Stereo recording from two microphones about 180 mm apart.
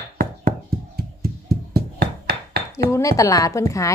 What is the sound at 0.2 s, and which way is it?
Hands, 55° right (ahead or behind).